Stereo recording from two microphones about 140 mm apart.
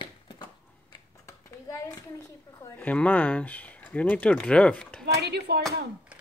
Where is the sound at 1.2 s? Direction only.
20° left (ahead or behind).